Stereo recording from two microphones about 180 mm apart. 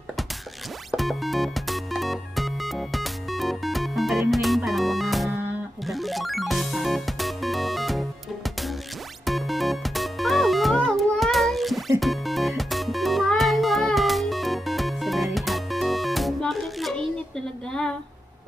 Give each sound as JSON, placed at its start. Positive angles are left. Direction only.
{"t": 0.9, "sound": "music", "side_deg": 0}
{"t": 9.2, "sound": "music", "side_deg": 0}